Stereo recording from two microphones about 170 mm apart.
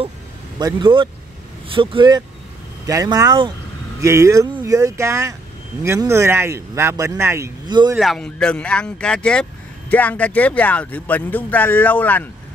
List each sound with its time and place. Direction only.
0.6 s speech: 25° right (ahead or behind)
8.0 s speech: 5° left (ahead or behind)